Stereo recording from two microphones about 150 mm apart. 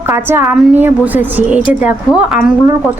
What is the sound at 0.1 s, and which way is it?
A woman's voice, 15° right (ahead or behind).